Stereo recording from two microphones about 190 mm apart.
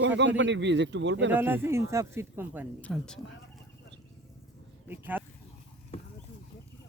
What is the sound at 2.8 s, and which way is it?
Speech, 5° left (ahead or behind).